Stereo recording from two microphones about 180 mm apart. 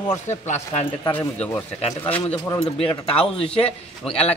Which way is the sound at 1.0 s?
20° left (ahead or behind).